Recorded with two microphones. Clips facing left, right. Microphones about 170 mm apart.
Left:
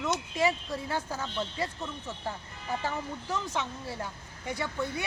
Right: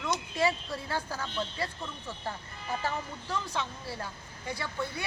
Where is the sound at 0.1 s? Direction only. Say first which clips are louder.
Even; 15° left (ahead or behind).